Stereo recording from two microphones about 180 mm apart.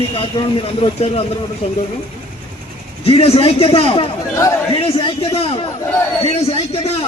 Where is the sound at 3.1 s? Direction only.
30° left (ahead or behind).